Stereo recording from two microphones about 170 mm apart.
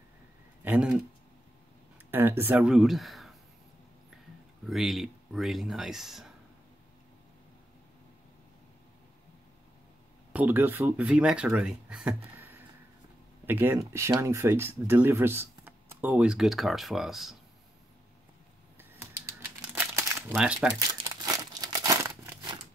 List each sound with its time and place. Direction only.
0.7 s speech: 5° right (ahead or behind)
2.0 s speech: 15° right (ahead or behind)
4.6 s speech: centre (ahead or behind)
10.3 s speech: 10° right (ahead or behind)
19.7 s crumpling: 15° right (ahead or behind)
20.3 s speech: 5° right (ahead or behind)
21.2 s crumpling: 20° right (ahead or behind)